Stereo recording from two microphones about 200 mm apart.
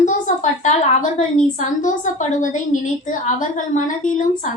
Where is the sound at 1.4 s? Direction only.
40° left (ahead or behind).